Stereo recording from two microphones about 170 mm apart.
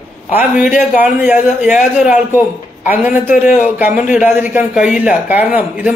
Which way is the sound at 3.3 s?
50° left (ahead or behind).